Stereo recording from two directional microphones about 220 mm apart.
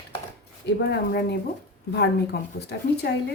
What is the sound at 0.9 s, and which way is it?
Speech, 50° left (ahead or behind).